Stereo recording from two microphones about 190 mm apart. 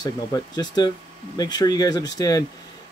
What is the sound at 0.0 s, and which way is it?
Speech, 20° left (ahead or behind).